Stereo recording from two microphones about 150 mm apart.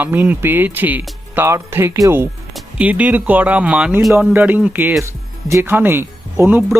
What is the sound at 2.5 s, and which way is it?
Speech, 10° right (ahead or behind).